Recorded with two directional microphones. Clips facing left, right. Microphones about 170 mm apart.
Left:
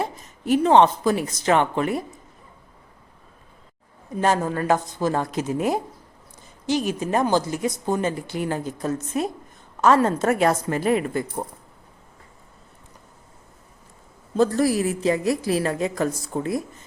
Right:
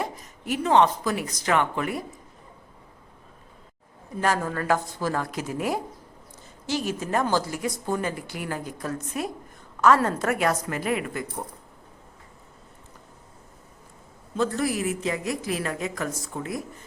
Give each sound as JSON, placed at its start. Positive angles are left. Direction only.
{"t": 0.0, "sound": "speech", "side_deg": 30}
{"t": 4.2, "sound": "a woman's voice", "side_deg": 25}
{"t": 14.3, "sound": "a woman's voice", "side_deg": 35}